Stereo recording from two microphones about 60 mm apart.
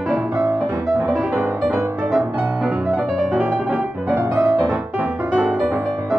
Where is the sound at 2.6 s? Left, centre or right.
Centre.